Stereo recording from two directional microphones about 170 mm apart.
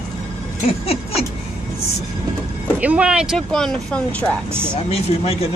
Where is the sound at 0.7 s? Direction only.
35° left (ahead or behind).